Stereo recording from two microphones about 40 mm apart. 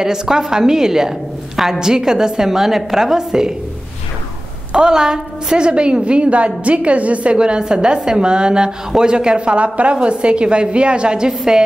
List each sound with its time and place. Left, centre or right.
0.0 s a woman's voice: centre
4.7 s a woman's voice: centre